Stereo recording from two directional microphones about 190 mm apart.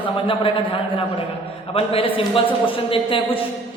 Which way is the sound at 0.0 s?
30° left (ahead or behind).